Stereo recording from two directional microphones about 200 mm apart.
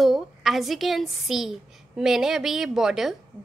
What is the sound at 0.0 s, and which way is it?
A woman's voice, centre (ahead or behind).